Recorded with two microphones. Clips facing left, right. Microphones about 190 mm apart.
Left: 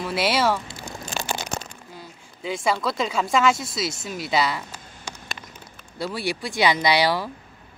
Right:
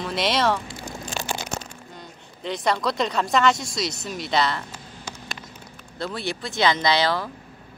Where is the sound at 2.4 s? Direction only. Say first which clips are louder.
Even; 5° left (ahead or behind).